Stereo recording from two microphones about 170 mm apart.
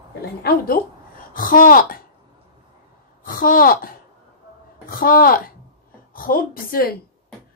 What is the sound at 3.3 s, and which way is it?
A woman's voice, 55° left (ahead or behind).